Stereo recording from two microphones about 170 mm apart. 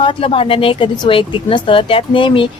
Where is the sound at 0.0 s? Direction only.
30° left (ahead or behind).